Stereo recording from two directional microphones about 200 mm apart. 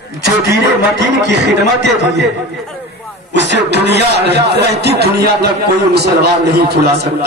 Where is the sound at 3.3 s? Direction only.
60° right (ahead or behind).